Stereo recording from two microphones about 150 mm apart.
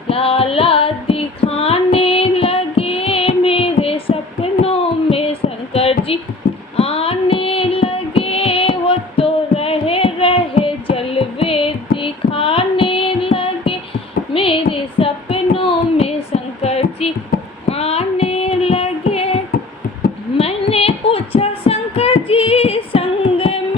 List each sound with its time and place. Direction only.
0.1 s female singing: 40° left (ahead or behind)
4.6 s child singing: 40° left (ahead or behind)
6.7 s music: 40° left (ahead or behind)
14.3 s a sound: 35° left (ahead or behind)
17.7 s female singing: 45° left (ahead or behind)
20.4 s a sound: 40° left (ahead or behind)